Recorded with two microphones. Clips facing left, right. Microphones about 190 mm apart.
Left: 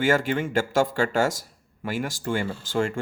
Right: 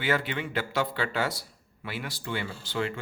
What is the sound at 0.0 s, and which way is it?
Speech, 45° left (ahead or behind).